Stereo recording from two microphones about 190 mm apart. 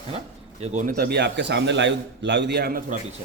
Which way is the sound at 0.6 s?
40° right (ahead or behind).